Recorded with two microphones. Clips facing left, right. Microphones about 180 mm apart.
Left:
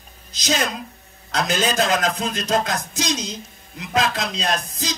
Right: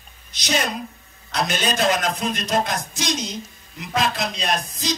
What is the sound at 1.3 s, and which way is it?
A man's voice, 90° left.